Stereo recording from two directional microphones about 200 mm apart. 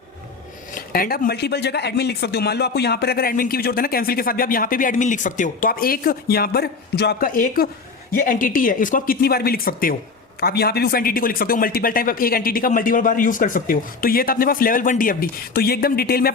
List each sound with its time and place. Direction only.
0.7 s speech: 45° left (ahead or behind)